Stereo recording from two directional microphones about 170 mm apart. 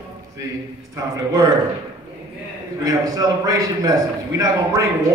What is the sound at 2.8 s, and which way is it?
A man's voice, 20° right (ahead or behind).